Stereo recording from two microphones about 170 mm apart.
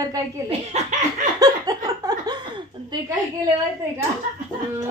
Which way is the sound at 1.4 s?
20° right (ahead or behind).